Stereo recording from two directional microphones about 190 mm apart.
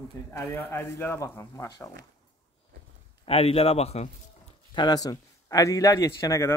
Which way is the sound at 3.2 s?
30° left (ahead or behind).